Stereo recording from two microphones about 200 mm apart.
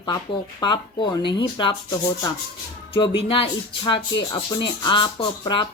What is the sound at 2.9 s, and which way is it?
Speech, 25° left (ahead or behind).